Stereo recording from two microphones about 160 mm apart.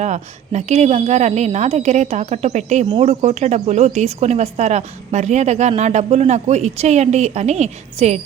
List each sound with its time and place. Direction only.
0.0 s speech: 45° right (ahead or behind)